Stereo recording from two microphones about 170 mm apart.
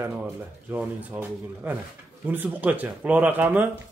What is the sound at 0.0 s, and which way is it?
Speech, 10° right (ahead or behind).